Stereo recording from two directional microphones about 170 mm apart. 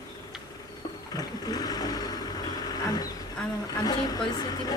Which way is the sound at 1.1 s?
20° left (ahead or behind).